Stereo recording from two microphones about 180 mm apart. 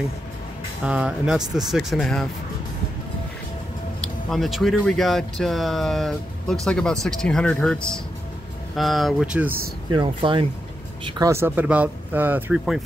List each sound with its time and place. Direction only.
0.8 s speech: 5° right (ahead or behind)
4.0 s speech: centre (ahead or behind)
9.9 s speech: 30° right (ahead or behind); by 12.8 s 5° right (ahead or behind)